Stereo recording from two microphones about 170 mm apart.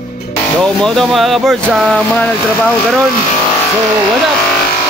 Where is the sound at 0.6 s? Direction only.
5° left (ahead or behind).